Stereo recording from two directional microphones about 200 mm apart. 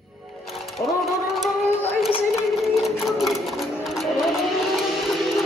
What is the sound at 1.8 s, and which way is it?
Child singing, 30° left (ahead or behind).